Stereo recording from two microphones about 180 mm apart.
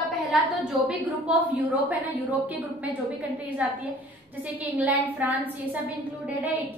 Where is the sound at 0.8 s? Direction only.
5° right (ahead or behind).